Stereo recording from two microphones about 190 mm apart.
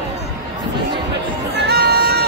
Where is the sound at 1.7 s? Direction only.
55° right (ahead or behind).